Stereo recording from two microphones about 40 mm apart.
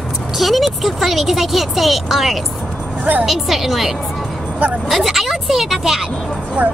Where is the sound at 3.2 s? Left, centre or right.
Centre.